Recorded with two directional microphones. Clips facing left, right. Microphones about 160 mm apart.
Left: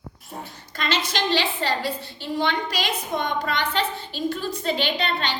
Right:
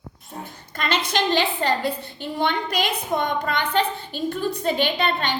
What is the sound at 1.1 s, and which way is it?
A woman's voice, 50° right (ahead or behind).